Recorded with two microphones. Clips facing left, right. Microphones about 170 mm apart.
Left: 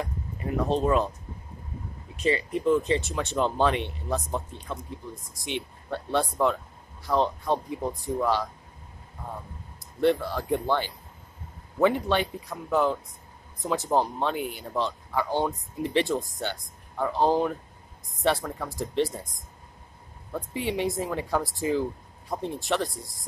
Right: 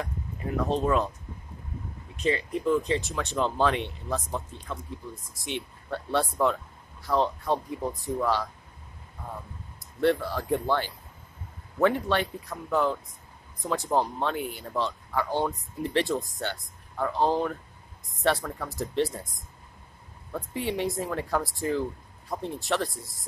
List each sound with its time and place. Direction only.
0.5 s speech: 10° left (ahead or behind)
2.1 s speech: centre (ahead or behind)
4.3 s speech: 15° left (ahead or behind)
5.3 s speech: centre (ahead or behind)
9.9 s speech: centre (ahead or behind)